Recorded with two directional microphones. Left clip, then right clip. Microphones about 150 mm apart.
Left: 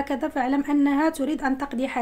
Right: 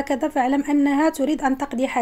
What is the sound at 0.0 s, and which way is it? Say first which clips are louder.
A woman's voice: right 4 dB; 30° right (ahead or behind).